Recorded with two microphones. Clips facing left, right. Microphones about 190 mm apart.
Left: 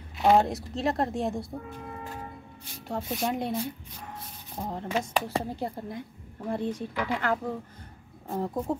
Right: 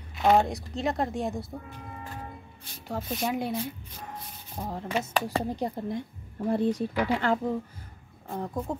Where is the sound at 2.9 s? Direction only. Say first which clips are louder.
Even; centre (ahead or behind).